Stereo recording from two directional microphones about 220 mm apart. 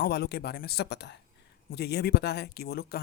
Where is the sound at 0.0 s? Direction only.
45° left (ahead or behind).